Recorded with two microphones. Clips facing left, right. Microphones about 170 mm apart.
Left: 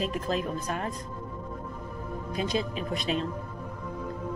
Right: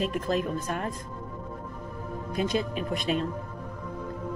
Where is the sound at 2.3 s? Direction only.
50° right (ahead or behind).